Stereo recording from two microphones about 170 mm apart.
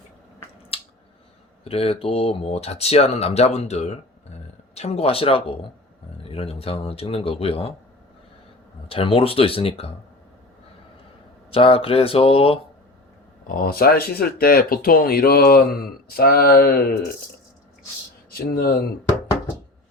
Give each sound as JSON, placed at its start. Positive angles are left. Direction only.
{"t": 0.7, "sound": "a sound", "side_deg": 35}
{"t": 1.6, "sound": "speech", "side_deg": 35}
{"t": 8.9, "sound": "speech", "side_deg": 35}
{"t": 11.5, "sound": "speech", "side_deg": 35}
{"t": 13.5, "sound": "speech", "side_deg": 60}
{"t": 18.3, "sound": "speech", "side_deg": 65}